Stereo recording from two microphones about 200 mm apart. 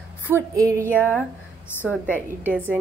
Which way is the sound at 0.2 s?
10° right (ahead or behind).